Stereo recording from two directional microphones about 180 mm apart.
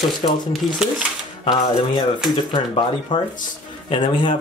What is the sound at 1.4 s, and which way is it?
Speech, 25° left (ahead or behind).